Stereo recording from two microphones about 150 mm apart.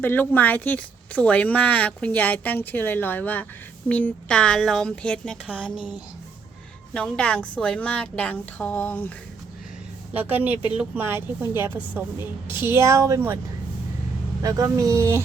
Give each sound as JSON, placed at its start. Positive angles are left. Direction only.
{"t": 0.0, "sound": "a woman's voice", "side_deg": 10}
{"t": 6.9, "sound": "speech", "side_deg": 5}
{"t": 10.2, "sound": "a woman's voice", "side_deg": -10}
{"t": 14.4, "sound": "speech", "side_deg": -25}